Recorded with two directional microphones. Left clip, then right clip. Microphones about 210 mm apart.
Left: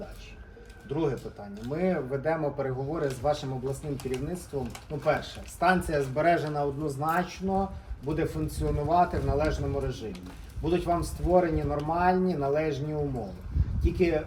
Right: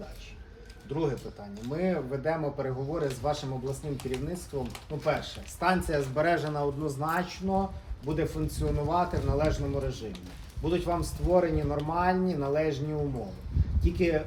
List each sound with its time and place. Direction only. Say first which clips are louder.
0.9 s speech: left 1 dB; centre (ahead or behind)